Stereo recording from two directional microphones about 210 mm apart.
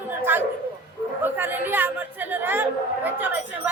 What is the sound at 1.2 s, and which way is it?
Chatter, 10° right (ahead or behind).